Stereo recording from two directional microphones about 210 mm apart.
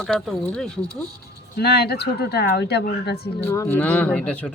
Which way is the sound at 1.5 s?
50° left (ahead or behind).